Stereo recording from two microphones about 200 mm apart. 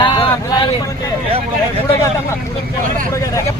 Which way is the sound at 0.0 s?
25° left (ahead or behind).